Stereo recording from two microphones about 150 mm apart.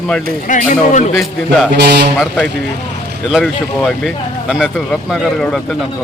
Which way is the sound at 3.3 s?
Centre (ahead or behind).